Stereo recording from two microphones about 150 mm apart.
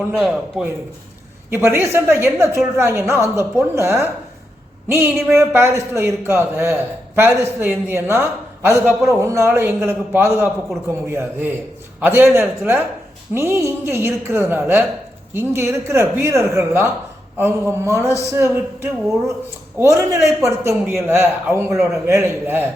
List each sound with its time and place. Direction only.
0.1 s a man's voice: 5° right (ahead or behind)
1.5 s a man's voice: 15° right (ahead or behind)